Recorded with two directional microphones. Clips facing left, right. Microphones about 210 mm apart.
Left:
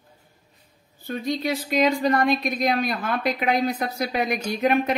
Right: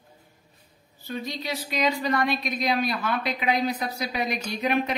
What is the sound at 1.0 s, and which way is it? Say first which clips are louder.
A woman's voice: left 6 dB; 55° left (ahead or behind).